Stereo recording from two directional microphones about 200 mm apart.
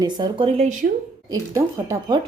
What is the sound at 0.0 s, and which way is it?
Speech, 25° right (ahead or behind).